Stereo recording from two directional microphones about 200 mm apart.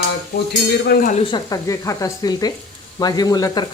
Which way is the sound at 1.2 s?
20° left (ahead or behind).